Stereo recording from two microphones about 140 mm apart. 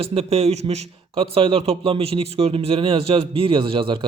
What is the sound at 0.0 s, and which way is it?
A man's voice, 45° right (ahead or behind).